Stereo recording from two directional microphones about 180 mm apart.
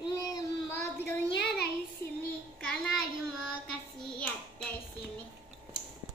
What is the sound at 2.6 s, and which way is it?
Speech, 5° left (ahead or behind).